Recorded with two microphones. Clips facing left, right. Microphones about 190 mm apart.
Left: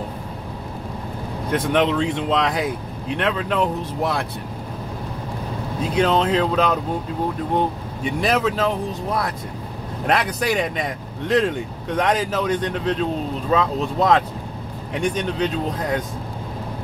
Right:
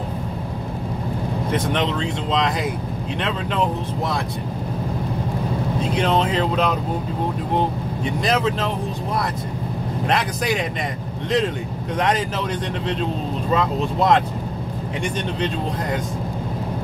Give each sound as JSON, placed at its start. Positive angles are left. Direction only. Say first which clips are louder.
{"t": 1.5, "sound": "speech", "louder": "left 4 dB", "side_deg": 5}
{"t": 3.2, "sound": "a man's voice", "louder": "left 2 dB", "side_deg": 5}
{"t": 5.8, "sound": "a man's voice", "louder": "left 2 dB", "side_deg": 0}
{"t": 8.3, "sound": "a man's voice", "louder": "left 1 dB", "side_deg": 5}
{"t": 10.0, "sound": "a man's voice", "louder": "left 2 dB", "side_deg": 0}
{"t": 13.5, "sound": "a man's voice", "louder": "left 1 dB", "side_deg": 0}